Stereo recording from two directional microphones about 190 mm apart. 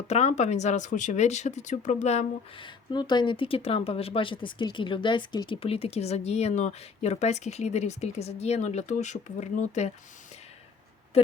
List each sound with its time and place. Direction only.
0.1 s speech: 35° left (ahead or behind)